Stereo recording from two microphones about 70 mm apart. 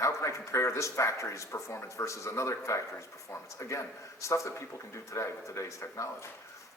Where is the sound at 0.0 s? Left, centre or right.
Left.